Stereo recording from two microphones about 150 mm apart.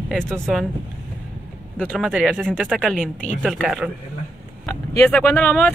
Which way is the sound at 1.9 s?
5° right (ahead or behind).